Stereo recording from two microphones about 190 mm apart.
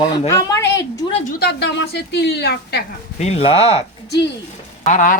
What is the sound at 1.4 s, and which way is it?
A woman's voice, 60° left (ahead or behind).